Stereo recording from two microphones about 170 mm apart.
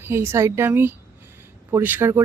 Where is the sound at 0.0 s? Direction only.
15° right (ahead or behind).